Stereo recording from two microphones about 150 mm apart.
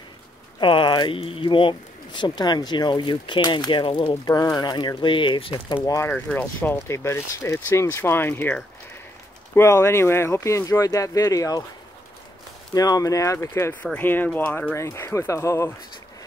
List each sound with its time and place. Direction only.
0.6 s speech: 35° left (ahead or behind)
4.1 s speech: 20° left (ahead or behind)
5.9 s speech: 15° left (ahead or behind)
12.7 s speech: 25° left (ahead or behind)